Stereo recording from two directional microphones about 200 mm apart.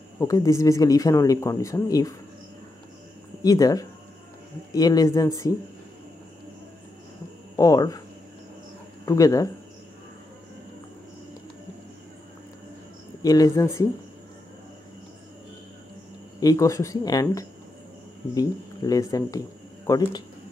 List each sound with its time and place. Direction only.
0.2 s speech: 15° left (ahead or behind)
3.4 s speech: 20° left (ahead or behind)
7.5 s speech: 15° left (ahead or behind)
9.0 s speech: 15° left (ahead or behind)
13.2 s speech: 15° left (ahead or behind)
16.3 s speech: 15° left (ahead or behind)